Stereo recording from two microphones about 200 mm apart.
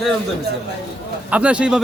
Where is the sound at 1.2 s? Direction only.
5° right (ahead or behind).